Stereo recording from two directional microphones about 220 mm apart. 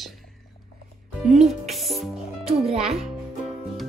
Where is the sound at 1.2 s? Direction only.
Centre (ahead or behind).